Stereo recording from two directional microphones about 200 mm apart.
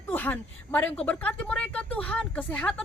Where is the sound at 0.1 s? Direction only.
10° left (ahead or behind).